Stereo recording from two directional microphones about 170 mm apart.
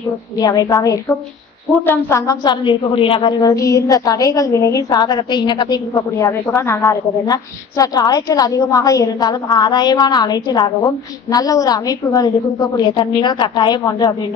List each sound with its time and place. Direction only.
0.4 s a woman's voice: 20° left (ahead or behind)